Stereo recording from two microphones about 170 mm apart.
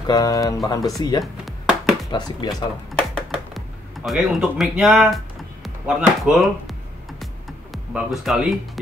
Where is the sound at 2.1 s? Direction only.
25° left (ahead or behind).